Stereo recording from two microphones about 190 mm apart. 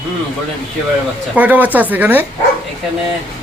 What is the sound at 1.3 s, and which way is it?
Speech, 10° right (ahead or behind).